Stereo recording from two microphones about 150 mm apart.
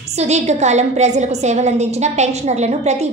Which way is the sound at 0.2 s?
50° right (ahead or behind).